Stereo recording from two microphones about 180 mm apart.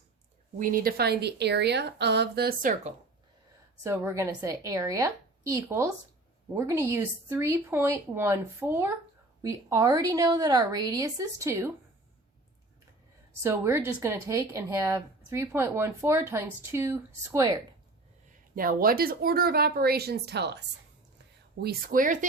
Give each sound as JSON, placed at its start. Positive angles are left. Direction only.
{"t": 0.6, "sound": "a woman's voice", "side_deg": -55}
{"t": 3.8, "sound": "a woman's voice", "side_deg": -15}
{"t": 13.4, "sound": "speech", "side_deg": -15}
{"t": 18.5, "sound": "a woman's voice", "side_deg": -55}
{"t": 21.6, "sound": "speech", "side_deg": -55}